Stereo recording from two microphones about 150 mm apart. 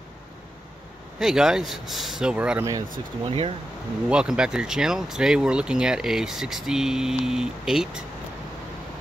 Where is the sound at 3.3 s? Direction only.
35° right (ahead or behind).